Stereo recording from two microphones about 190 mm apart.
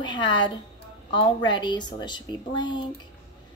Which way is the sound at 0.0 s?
25° left (ahead or behind).